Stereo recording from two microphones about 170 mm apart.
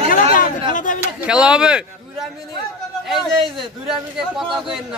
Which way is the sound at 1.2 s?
5° right (ahead or behind).